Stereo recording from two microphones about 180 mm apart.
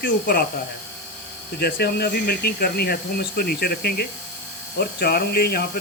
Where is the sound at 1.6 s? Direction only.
60° left (ahead or behind).